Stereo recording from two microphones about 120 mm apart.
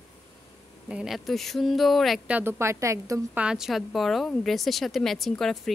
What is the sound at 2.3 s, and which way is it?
Speech, 15° right (ahead or behind).